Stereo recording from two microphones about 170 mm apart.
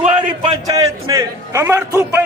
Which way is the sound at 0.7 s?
20° right (ahead or behind).